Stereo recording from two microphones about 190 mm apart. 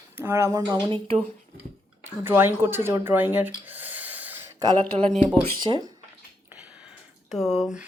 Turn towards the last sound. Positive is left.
turn(degrees=0)  # may be behind; listen again after turning